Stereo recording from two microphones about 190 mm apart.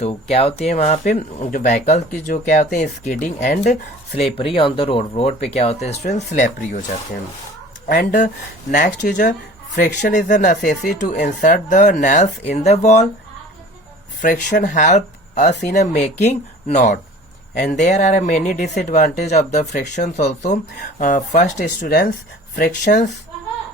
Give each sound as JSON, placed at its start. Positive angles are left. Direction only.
{"t": 0.0, "sound": "speech", "side_deg": 30}
{"t": 7.9, "sound": "speech", "side_deg": 40}
{"t": 14.2, "sound": "speech", "side_deg": 45}
{"t": 22.5, "sound": "speech", "side_deg": 45}